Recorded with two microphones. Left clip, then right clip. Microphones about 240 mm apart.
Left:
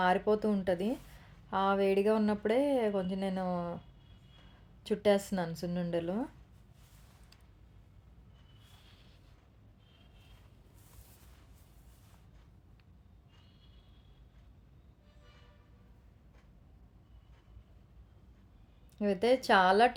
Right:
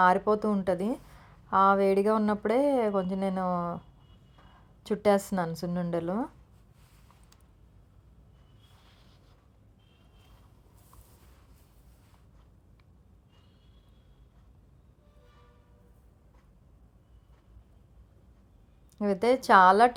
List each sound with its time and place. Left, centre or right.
0.0 s a woman's voice: centre
4.8 s a woman's voice: centre
18.9 s a woman's voice: centre